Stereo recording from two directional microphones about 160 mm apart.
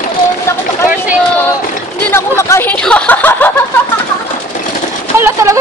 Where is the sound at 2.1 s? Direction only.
15° left (ahead or behind).